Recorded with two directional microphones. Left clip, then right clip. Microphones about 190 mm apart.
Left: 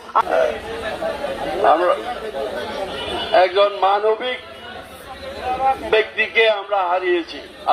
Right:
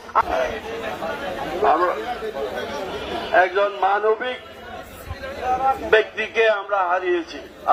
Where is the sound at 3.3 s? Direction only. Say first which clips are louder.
Left 3 dB; 25° left (ahead or behind).